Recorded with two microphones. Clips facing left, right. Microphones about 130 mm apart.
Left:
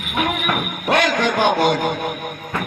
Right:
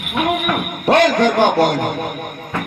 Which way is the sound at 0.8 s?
35° right (ahead or behind).